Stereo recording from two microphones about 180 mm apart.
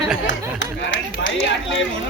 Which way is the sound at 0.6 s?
90° left.